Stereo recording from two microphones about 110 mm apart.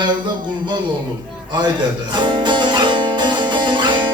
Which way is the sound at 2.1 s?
45° right (ahead or behind).